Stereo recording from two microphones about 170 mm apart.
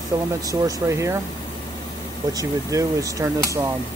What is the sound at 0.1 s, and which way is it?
Speech, 15° right (ahead or behind).